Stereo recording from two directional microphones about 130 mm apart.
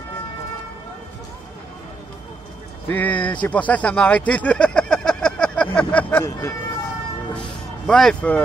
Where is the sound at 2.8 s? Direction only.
15° left (ahead or behind).